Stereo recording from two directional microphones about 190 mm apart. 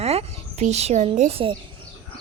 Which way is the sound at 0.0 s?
35° right (ahead or behind).